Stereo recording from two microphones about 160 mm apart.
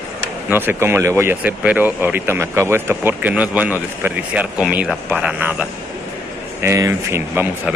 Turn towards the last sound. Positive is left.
turn(degrees=-15)  # may be behind; listen again after turning